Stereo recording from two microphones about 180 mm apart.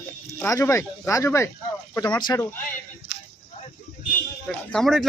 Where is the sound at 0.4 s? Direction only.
15° left (ahead or behind).